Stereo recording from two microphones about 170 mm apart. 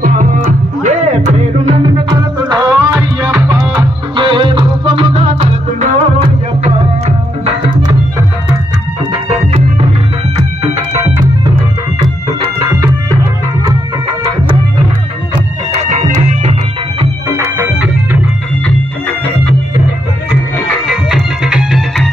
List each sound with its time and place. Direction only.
0.5 s music: 45° right (ahead or behind)
2.0 s music: 25° right (ahead or behind)
12.6 s music: 15° right (ahead or behind)
15.8 s music: 45° right (ahead or behind)
17.3 s music: 15° right (ahead or behind)
20.9 s music: 5° right (ahead or behind)